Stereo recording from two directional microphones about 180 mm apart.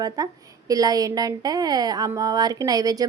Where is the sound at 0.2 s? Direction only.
20° right (ahead or behind).